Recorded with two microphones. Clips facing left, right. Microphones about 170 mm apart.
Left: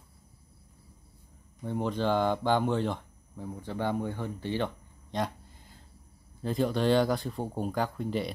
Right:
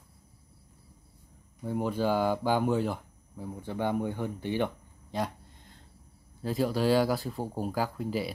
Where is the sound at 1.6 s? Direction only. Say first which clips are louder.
Right 1 dB; 5° right (ahead or behind).